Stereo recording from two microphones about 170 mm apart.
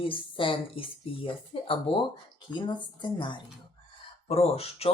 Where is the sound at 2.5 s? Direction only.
5° left (ahead or behind).